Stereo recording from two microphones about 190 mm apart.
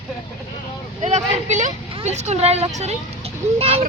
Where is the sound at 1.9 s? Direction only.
35° right (ahead or behind).